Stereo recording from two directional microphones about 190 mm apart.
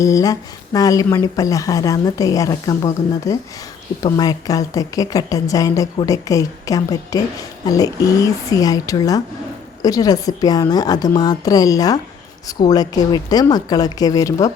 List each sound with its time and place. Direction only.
0.0 s a woman's voice: 15° left (ahead or behind)